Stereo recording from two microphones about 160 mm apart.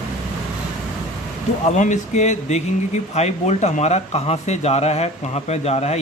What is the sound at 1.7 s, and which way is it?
Speech, 50° left (ahead or behind).